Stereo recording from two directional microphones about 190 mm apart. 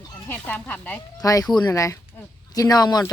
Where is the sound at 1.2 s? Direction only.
20° left (ahead or behind).